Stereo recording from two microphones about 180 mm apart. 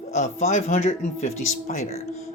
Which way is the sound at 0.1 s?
40° left (ahead or behind).